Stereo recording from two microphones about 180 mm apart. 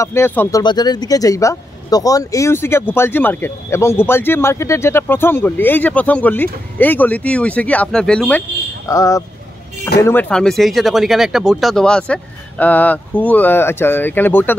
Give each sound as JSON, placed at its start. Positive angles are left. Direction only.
{"t": 0.0, "sound": "speech", "side_deg": 15}
{"t": 0.6, "sound": "speech", "side_deg": 20}